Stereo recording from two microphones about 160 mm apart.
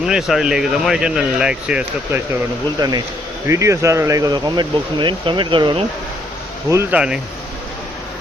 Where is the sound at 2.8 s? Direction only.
25° right (ahead or behind).